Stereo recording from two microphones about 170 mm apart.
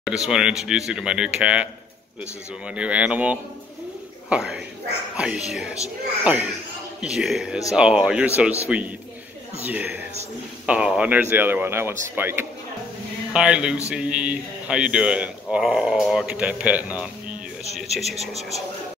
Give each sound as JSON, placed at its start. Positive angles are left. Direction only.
{"t": 0.0, "sound": "speech", "side_deg": -5}
{"t": 2.7, "sound": "a man's voice", "side_deg": -5}